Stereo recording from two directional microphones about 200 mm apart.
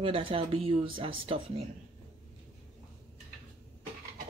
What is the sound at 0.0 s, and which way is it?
Speech, 25° right (ahead or behind).